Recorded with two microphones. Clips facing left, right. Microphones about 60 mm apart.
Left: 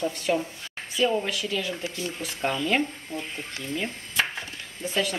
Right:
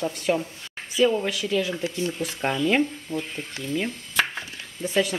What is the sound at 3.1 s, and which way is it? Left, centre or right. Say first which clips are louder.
Speech: right 4 dB; right.